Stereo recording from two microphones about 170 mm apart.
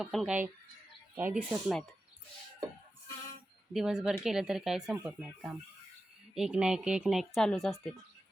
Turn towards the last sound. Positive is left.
turn(degrees=0)  # may be behind; listen again after turning